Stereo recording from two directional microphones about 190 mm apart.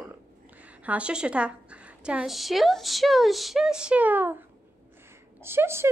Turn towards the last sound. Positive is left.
turn(degrees=-10)  # may be behind; listen again after turning